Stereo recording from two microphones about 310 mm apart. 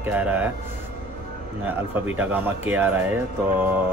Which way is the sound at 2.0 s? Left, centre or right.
Centre.